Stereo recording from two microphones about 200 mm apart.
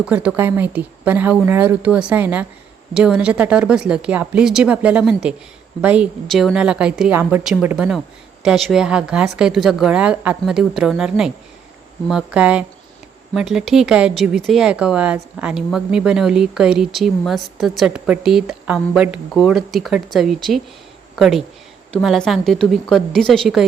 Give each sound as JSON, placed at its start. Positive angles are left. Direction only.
{"t": 0.0, "sound": "speech", "side_deg": -5}